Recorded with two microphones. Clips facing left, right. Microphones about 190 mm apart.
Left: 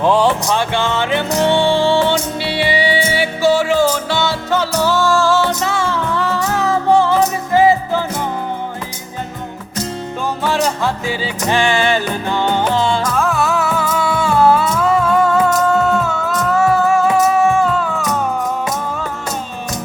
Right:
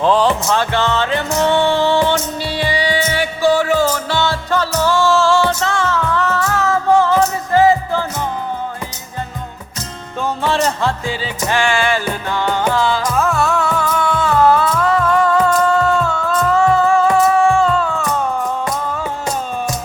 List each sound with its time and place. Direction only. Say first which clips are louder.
0.0 s music: even; 15° left (ahead or behind)
4.9 s music: right 1 dB; centre (ahead or behind)
5.5 s music: even; 10° left (ahead or behind)
10.4 s music: even; 5° left (ahead or behind)
11.2 s music: left 3 dB; 20° left (ahead or behind)
13.1 s music: even; centre (ahead or behind)
17.2 s music: right 1 dB; 20° left (ahead or behind)
17.7 s music: right 1 dB; centre (ahead or behind)